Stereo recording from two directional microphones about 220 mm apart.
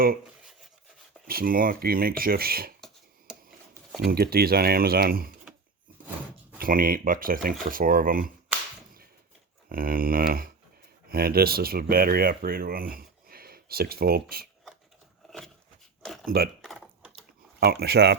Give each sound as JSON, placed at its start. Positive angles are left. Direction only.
{"t": 1.3, "sound": "speech", "side_deg": -40}
{"t": 3.9, "sound": "speech", "side_deg": -45}
{"t": 6.6, "sound": "speech", "side_deg": -40}
{"t": 9.6, "sound": "speech", "side_deg": -40}
{"t": 16.6, "sound": "typing", "side_deg": 0}
{"t": 17.6, "sound": "speech", "side_deg": -45}